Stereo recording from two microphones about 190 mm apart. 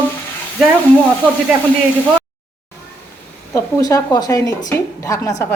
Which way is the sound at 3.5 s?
15° left (ahead or behind).